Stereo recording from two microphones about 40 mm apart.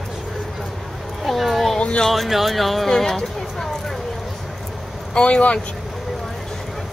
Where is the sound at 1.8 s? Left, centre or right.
Left.